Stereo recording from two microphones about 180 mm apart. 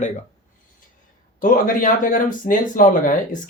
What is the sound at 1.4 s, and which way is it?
Speech, 50° left (ahead or behind).